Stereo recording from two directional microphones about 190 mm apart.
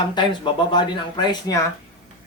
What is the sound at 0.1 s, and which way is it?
Speech, 25° left (ahead or behind).